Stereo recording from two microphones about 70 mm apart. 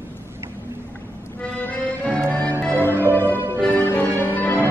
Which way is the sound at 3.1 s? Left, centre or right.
Left.